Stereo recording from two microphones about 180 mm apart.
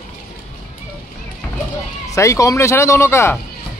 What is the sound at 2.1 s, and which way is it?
Speech, 15° left (ahead or behind).